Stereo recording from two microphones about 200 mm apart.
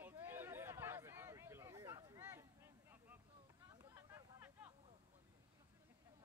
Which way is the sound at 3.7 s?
15° right (ahead or behind).